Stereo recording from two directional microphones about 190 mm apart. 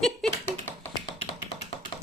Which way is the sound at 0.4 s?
10° left (ahead or behind).